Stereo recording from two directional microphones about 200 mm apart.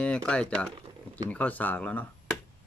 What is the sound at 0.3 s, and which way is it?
Speech, 5° left (ahead or behind).